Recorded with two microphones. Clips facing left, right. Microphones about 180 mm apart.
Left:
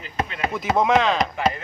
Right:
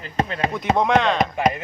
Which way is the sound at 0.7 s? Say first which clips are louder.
Even; centre (ahead or behind).